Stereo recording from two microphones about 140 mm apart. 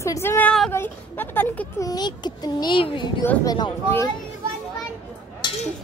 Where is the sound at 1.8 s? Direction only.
30° left (ahead or behind).